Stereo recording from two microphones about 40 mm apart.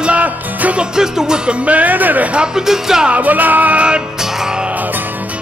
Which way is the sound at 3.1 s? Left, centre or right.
Right.